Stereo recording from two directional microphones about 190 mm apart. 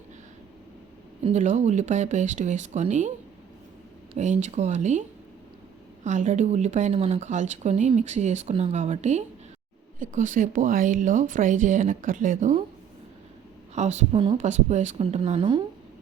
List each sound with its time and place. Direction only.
1.2 s speech: 40° right (ahead or behind)
4.2 s speech: 40° right (ahead or behind)
6.1 s a woman's voice: 40° right (ahead or behind)
13.7 s speech: 35° right (ahead or behind)